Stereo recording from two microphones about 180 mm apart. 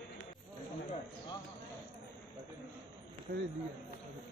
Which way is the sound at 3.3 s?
55° right (ahead or behind).